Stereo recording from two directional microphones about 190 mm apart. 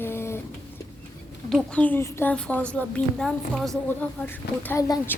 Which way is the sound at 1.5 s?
5° left (ahead or behind).